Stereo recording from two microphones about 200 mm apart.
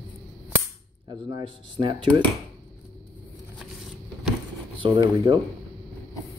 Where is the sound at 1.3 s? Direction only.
25° right (ahead or behind).